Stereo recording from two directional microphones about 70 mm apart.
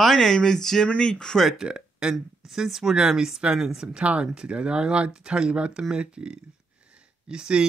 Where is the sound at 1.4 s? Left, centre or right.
Centre.